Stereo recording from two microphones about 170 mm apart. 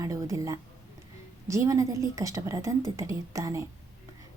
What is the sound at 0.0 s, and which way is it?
Speech, 20° right (ahead or behind).